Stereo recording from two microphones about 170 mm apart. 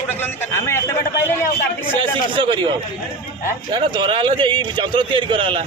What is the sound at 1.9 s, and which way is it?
Speech, 30° right (ahead or behind).